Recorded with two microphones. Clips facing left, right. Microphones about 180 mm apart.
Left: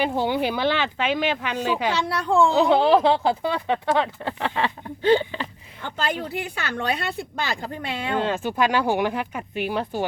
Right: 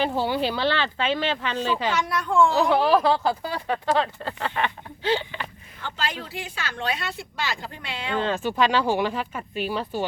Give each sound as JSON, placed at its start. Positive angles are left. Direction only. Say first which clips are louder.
{"t": 0.0, "sound": "speech", "louder": "left 1 dB", "side_deg": 15}
{"t": 2.0, "sound": "speech", "louder": "even", "side_deg": 30}
{"t": 5.8, "sound": "speech", "louder": "left 4 dB", "side_deg": 50}
{"t": 8.1, "sound": "speech", "louder": "even", "side_deg": 10}